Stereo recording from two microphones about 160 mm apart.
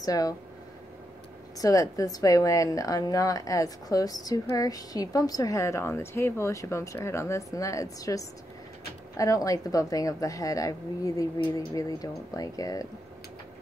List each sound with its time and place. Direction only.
0.0 s speech: 20° left (ahead or behind)
1.6 s speech: 20° left (ahead or behind)